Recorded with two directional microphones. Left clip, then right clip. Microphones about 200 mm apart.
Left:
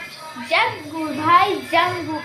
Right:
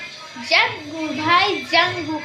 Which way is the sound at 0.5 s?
15° right (ahead or behind).